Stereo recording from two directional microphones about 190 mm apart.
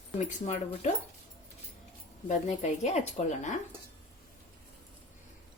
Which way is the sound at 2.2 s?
35° left (ahead or behind).